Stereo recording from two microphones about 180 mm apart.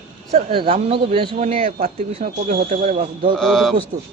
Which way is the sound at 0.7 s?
35° right (ahead or behind).